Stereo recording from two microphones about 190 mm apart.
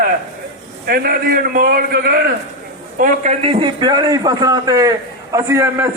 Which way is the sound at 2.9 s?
40° right (ahead or behind).